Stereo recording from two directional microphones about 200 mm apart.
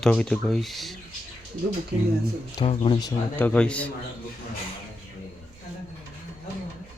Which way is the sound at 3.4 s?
5° left (ahead or behind).